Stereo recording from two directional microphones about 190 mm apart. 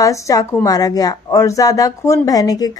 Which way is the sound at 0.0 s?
15° left (ahead or behind).